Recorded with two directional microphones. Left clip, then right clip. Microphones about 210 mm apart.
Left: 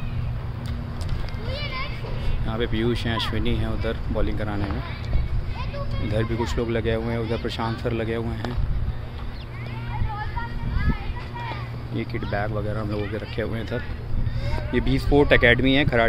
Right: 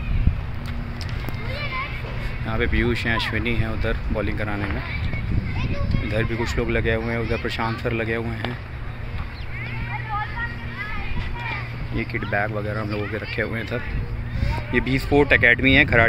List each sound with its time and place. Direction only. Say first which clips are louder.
1.5 s a sound: right 2 dB; 45° right (ahead or behind)
2.4 s speech: right 2 dB; centre (ahead or behind)
6.0 s speech: right 1 dB; 5° left (ahead or behind)
12.0 s speech: right 4 dB; 5° right (ahead or behind)